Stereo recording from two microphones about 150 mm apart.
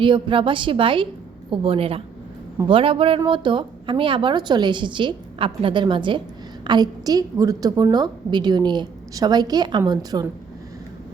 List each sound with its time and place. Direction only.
0.0 s a woman's voice: 35° right (ahead or behind)